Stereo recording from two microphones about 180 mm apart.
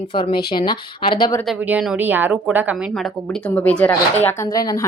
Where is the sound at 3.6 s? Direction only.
10° left (ahead or behind).